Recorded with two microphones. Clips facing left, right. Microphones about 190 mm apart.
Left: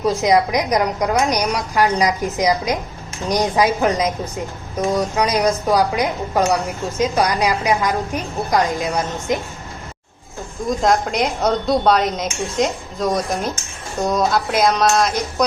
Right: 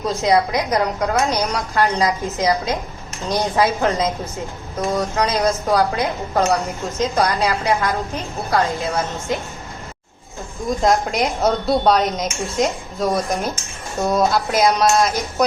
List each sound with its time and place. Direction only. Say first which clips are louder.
0.1 s a woman's voice: even; 15° left (ahead or behind)
10.7 s a woman's voice: even; centre (ahead or behind)